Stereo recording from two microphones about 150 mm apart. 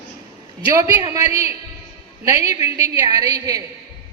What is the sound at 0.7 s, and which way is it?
A man's voice, 25° right (ahead or behind).